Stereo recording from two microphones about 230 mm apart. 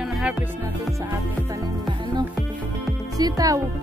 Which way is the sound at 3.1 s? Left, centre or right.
Centre.